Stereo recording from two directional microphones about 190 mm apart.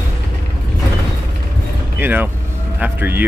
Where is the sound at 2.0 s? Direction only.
10° right (ahead or behind).